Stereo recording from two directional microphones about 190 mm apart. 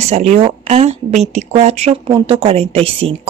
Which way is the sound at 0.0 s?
35° right (ahead or behind).